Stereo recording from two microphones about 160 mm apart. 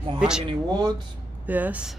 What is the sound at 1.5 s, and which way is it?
Speech, 10° right (ahead or behind).